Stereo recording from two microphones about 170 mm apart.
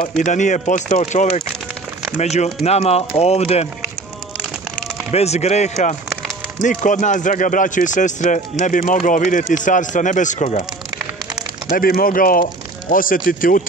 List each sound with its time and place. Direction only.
0.2 s speech: 45° left (ahead or behind)
5.1 s speech: 40° left (ahead or behind)
11.7 s speech: 60° left (ahead or behind)